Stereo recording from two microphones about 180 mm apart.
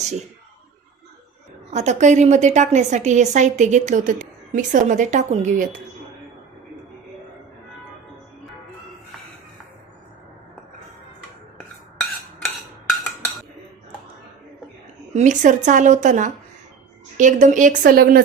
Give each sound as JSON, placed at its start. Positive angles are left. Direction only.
{"t": 1.7, "sound": "a woman's voice", "side_deg": -40}
{"t": 15.1, "sound": "a woman's voice", "side_deg": -45}